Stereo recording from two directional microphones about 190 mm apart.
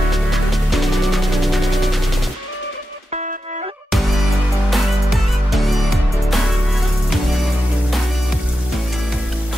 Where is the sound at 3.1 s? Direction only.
40° right (ahead or behind).